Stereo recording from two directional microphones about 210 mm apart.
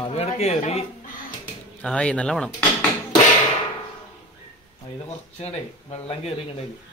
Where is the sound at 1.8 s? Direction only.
5° left (ahead or behind).